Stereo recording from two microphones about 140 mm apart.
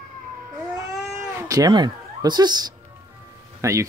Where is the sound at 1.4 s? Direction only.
25° right (ahead or behind).